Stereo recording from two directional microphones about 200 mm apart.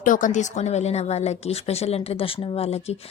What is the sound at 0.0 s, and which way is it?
A woman's voice, 40° left (ahead or behind).